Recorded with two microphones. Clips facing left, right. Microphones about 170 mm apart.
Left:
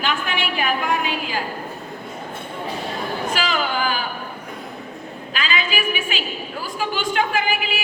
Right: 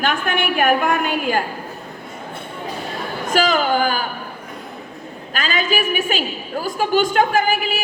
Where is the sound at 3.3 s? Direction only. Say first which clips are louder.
Right 9 dB; 45° right (ahead or behind).